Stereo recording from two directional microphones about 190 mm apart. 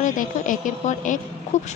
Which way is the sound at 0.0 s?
40° left (ahead or behind).